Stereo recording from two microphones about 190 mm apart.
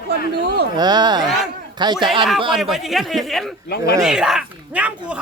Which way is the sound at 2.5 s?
Centre (ahead or behind).